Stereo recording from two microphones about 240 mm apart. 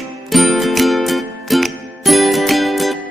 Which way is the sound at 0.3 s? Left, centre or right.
Centre.